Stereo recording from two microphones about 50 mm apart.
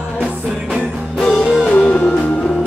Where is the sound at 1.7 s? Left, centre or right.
Left.